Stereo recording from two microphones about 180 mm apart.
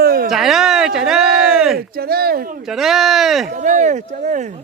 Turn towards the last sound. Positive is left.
turn(degrees=-45)  # may be behind; listen again after turning